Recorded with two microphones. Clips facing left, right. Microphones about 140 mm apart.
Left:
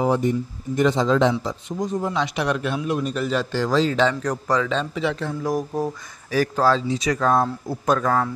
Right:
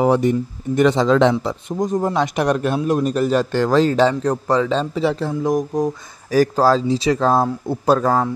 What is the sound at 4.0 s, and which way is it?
Speech, 30° right (ahead or behind).